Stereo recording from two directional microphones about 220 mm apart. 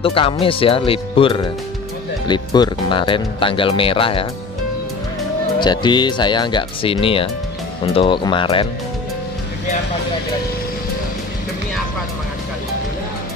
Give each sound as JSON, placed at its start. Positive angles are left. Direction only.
{"t": 0.0, "sound": "speech", "side_deg": 25}
{"t": 5.6, "sound": "speech", "side_deg": 20}